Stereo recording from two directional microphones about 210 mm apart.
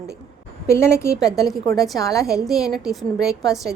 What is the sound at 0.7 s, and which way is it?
Speech, 15° left (ahead or behind).